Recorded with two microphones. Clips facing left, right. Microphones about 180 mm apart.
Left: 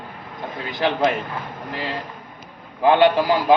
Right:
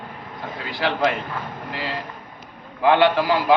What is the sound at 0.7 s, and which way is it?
Speech, 20° left (ahead or behind).